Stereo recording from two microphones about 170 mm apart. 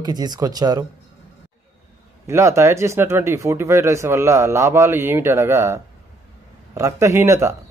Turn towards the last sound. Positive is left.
turn(degrees=-15)  # may be behind; listen again after turning